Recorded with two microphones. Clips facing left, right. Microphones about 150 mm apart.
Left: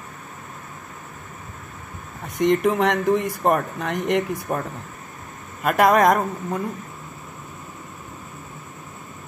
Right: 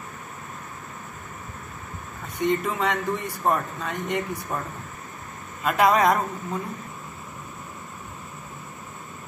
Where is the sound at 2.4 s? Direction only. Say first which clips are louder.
Left 6 dB; 70° left (ahead or behind).